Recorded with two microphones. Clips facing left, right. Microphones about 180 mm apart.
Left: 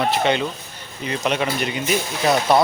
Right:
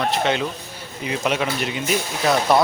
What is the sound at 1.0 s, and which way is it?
Speech, 5° right (ahead or behind).